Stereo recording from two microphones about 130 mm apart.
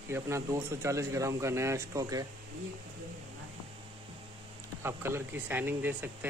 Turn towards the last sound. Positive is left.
turn(degrees=-15)  # may be behind; listen again after turning